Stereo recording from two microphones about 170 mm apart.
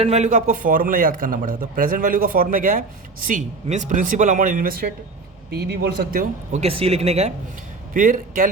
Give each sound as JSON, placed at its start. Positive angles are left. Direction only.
{"t": 0.0, "sound": "a man's voice", "side_deg": -40}
{"t": 5.5, "sound": "speech", "side_deg": -70}
{"t": 6.5, "sound": "speech", "side_deg": -35}
{"t": 7.9, "sound": "a man's voice", "side_deg": -50}